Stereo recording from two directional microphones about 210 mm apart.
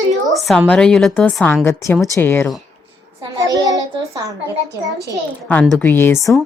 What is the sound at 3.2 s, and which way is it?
A child's voice, 15° right (ahead or behind).